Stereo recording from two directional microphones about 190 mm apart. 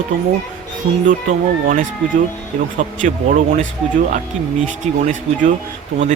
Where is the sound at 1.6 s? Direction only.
45° right (ahead or behind).